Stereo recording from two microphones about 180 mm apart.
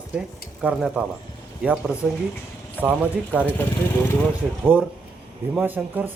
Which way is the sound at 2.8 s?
10° right (ahead or behind).